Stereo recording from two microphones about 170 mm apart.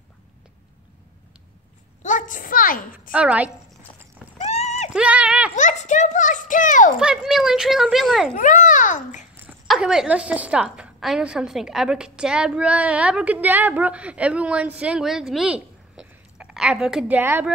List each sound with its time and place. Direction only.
2.0 s a child's voice: 50° left (ahead or behind)
3.1 s a woman's voice: 10° right (ahead or behind)
4.4 s horse: 40° left (ahead or behind)
4.9 s a sound: 5° right (ahead or behind)
5.6 s a child's voice: 45° left (ahead or behind)
7.0 s a woman's voice: 5° right (ahead or behind)
8.4 s a child's voice: 50° left (ahead or behind)
9.7 s a woman's voice: 5° right (ahead or behind)